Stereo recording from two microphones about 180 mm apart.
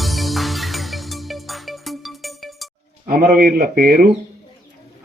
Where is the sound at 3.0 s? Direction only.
50° right (ahead or behind).